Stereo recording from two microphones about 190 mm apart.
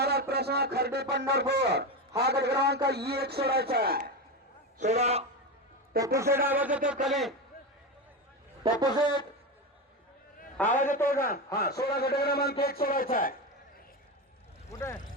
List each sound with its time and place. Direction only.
0.0 s a man's voice: 55° right (ahead or behind)
4.8 s a man's voice: 35° right (ahead or behind)
6.1 s a man's voice: 15° right (ahead or behind)
8.7 s speech: 25° right (ahead or behind)
10.8 s a man's voice: 45° left (ahead or behind)
11.0 s speech: 15° left (ahead or behind)
11.6 s a man's voice: 55° left (ahead or behind)
14.7 s speech: 15° left (ahead or behind)